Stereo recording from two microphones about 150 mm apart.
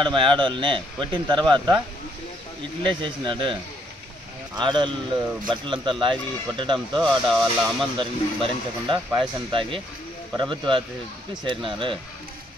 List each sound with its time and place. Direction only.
0.0 s speech: 35° right (ahead or behind)
2.8 s speech: 30° right (ahead or behind)
4.6 s speech: 30° right (ahead or behind)
7.0 s speech: centre (ahead or behind)
8.0 s speech: 35° right (ahead or behind)